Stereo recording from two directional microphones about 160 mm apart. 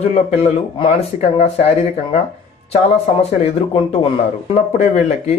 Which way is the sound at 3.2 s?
40° left (ahead or behind).